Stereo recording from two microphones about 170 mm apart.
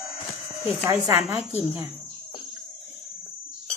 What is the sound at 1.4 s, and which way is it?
Speech, 35° left (ahead or behind).